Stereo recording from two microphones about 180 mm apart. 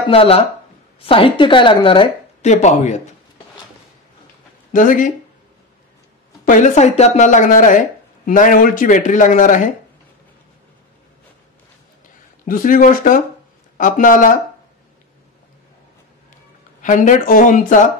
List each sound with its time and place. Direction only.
0.1 s speech: 30° left (ahead or behind)
4.7 s a woman's voice: 45° left (ahead or behind)
6.4 s a woman's voice: 45° left (ahead or behind)
12.4 s a woman's voice: 50° left (ahead or behind)
16.8 s a woman's voice: 45° left (ahead or behind)